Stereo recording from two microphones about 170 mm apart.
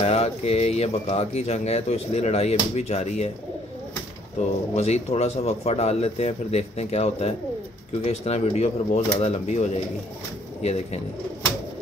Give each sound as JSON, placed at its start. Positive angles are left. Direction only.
{"t": 0.0, "sound": "speech", "side_deg": 35}
{"t": 4.4, "sound": "speech", "side_deg": 40}